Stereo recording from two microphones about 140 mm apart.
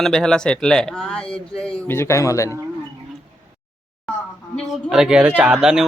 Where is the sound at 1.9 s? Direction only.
20° left (ahead or behind).